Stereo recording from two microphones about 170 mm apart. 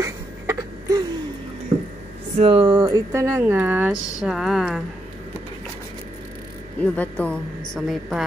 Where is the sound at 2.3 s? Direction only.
30° right (ahead or behind); by 4.8 s centre (ahead or behind).